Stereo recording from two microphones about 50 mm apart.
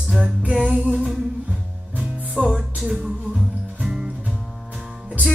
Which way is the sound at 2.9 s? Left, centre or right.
Right.